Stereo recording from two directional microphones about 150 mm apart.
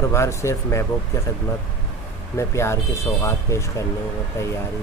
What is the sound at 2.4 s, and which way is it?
Speech, 20° left (ahead or behind).